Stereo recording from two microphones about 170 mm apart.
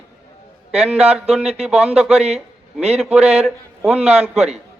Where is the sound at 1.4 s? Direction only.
40° right (ahead or behind).